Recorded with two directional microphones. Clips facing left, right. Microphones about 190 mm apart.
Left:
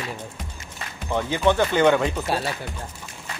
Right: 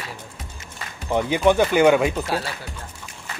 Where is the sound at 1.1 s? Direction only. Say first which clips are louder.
Right 3 dB; 15° right (ahead or behind).